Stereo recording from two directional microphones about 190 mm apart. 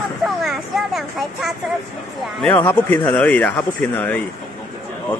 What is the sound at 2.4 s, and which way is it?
Speech, 10° left (ahead or behind).